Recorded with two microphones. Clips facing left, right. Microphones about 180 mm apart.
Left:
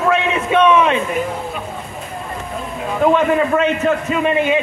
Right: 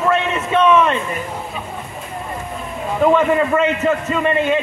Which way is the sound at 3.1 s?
Centre (ahead or behind).